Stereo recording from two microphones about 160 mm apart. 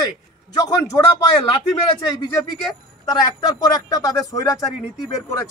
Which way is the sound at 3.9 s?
20° left (ahead or behind).